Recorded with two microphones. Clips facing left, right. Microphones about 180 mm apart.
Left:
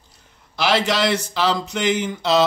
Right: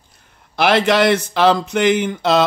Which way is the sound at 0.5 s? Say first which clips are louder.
Right 5 dB; 55° right (ahead or behind).